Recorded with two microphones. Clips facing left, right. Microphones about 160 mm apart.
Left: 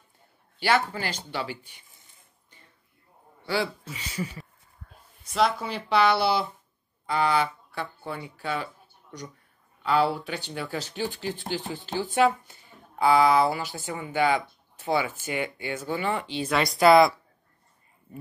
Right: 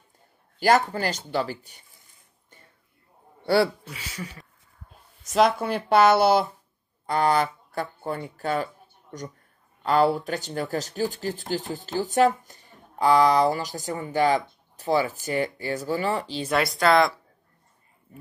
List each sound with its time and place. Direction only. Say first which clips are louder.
0.6 s speech: right 4 dB; 45° right (ahead or behind)
3.4 s speech: right 7 dB; 45° right (ahead or behind)
3.8 s speech: left 3 dB; centre (ahead or behind)
5.2 s speech: right 4 dB; 45° right (ahead or behind)
9.8 s speech: right 3 dB; 45° right (ahead or behind)
16.4 s speech: left 3 dB; centre (ahead or behind)